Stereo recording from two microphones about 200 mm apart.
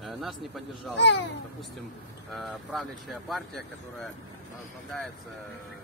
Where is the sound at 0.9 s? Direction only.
60° left (ahead or behind).